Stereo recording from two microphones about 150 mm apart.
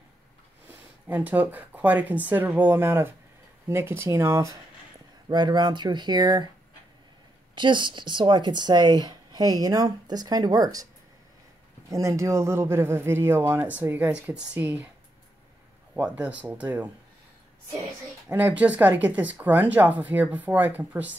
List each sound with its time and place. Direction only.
0.7 s speech: 10° right (ahead or behind); by 6.5 s 30° right (ahead or behind)
7.5 s speech: 30° right (ahead or behind)
11.9 s speech: 20° right (ahead or behind)
16.0 s speech: 10° right (ahead or behind)
18.3 s speech: 10° right (ahead or behind)